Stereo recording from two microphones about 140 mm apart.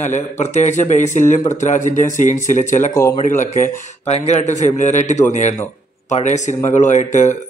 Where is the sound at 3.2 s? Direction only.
65° left (ahead or behind).